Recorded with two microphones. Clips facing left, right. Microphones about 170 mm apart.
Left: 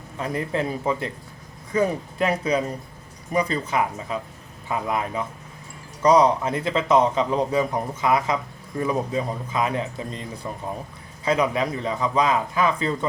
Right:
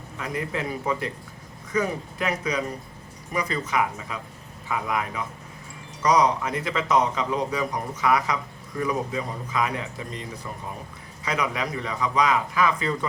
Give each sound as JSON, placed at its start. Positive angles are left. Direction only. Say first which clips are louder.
{"t": 0.2, "sound": "a man's voice", "louder": "left 4 dB", "side_deg": 30}
{"t": 11.3, "sound": "a man's voice", "louder": "left 6 dB", "side_deg": 30}